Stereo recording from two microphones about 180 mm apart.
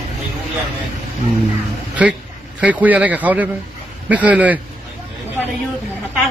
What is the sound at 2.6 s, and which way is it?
Speech, 10° right (ahead or behind).